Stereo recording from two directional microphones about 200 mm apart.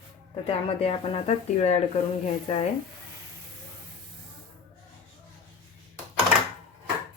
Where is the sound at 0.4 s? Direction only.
30° left (ahead or behind).